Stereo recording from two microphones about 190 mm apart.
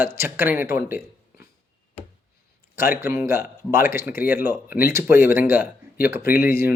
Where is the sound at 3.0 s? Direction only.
15° right (ahead or behind).